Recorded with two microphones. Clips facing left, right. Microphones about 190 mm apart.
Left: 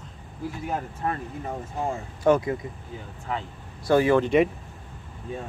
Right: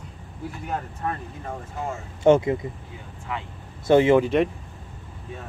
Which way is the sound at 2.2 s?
25° right (ahead or behind).